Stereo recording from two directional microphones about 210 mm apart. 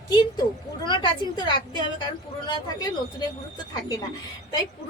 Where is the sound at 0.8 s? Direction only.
20° left (ahead or behind).